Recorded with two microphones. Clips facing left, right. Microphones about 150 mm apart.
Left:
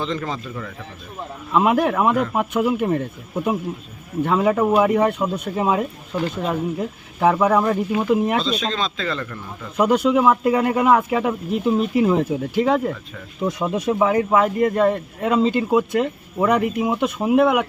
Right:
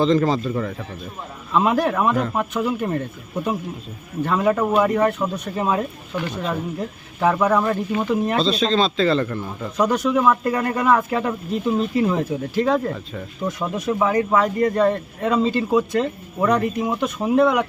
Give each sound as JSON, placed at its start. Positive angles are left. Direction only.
{"t": 0.0, "sound": "speech", "side_deg": -35}
{"t": 1.5, "sound": "a man's voice", "side_deg": 10}
{"t": 4.3, "sound": "a man's voice", "side_deg": 10}
{"t": 8.4, "sound": "speech", "side_deg": -30}
{"t": 9.7, "sound": "a man's voice", "side_deg": 10}